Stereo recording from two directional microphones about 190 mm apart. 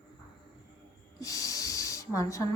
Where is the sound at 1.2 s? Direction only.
15° left (ahead or behind).